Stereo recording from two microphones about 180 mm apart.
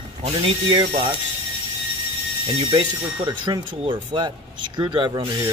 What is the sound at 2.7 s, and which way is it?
Speech, 30° right (ahead or behind).